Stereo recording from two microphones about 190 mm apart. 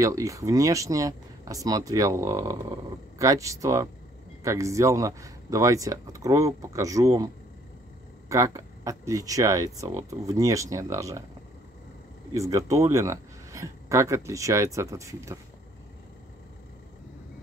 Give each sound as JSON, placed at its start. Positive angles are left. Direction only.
{"t": 0.0, "sound": "speech", "side_deg": -15}
{"t": 8.3, "sound": "speech", "side_deg": -15}
{"t": 12.4, "sound": "speech", "side_deg": -15}